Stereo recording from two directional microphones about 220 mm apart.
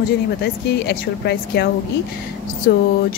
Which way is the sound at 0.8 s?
50° left (ahead or behind).